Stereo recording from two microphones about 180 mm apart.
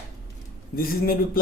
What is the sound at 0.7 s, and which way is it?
Speech, 55° left (ahead or behind).